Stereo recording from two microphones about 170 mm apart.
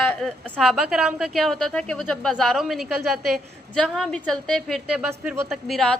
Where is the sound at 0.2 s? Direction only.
5° left (ahead or behind).